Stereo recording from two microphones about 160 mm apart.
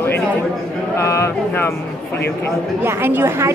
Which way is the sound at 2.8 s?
15° right (ahead or behind).